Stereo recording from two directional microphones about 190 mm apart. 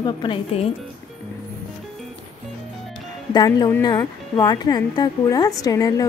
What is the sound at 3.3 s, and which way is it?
Speech, 20° left (ahead or behind).